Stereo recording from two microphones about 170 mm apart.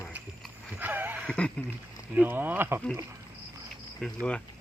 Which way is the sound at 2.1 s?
10° right (ahead or behind).